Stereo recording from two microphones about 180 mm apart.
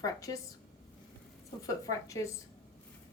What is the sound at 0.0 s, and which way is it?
Speech, 20° left (ahead or behind).